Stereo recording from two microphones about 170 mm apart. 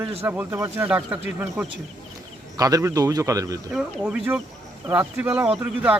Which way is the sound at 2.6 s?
20° right (ahead or behind).